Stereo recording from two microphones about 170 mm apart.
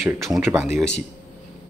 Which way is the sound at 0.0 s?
Centre (ahead or behind).